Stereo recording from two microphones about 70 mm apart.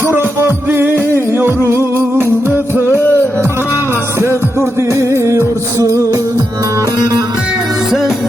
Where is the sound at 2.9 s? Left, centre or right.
Left.